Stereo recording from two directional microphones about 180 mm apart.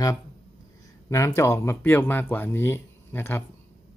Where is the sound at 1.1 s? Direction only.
15° left (ahead or behind).